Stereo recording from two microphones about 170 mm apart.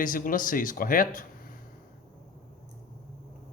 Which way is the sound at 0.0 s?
55° left (ahead or behind).